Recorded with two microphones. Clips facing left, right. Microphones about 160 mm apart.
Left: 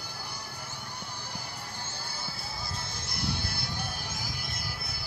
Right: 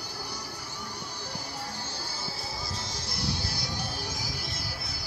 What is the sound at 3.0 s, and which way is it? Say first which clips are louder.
Music: even; 55° left (ahead or behind).